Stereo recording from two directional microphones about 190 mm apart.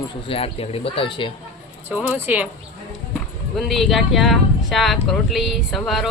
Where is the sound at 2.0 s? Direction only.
10° right (ahead or behind).